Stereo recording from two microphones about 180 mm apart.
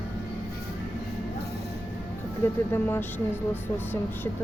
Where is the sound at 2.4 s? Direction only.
15° left (ahead or behind).